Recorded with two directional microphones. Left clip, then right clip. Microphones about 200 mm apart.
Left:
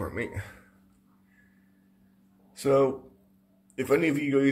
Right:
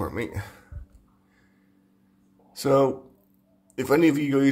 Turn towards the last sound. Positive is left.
turn(degrees=-30)  # may be behind; listen again after turning